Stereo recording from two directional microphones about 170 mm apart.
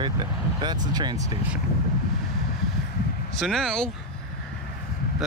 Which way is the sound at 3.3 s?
Centre (ahead or behind).